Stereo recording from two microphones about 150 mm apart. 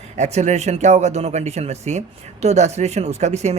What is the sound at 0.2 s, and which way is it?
Speech, 50° right (ahead or behind).